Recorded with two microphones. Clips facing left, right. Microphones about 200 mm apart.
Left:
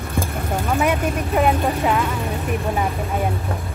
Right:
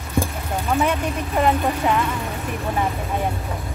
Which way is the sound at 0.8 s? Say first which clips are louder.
Left 2 dB; 10° left (ahead or behind).